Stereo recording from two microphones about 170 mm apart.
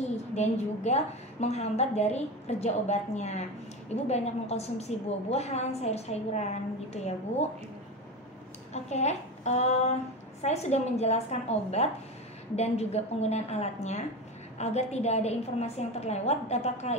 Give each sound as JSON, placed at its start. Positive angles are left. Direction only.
{"t": 0.3, "sound": "a woman's voice", "side_deg": 40}
{"t": 8.7, "sound": "a woman's voice", "side_deg": 40}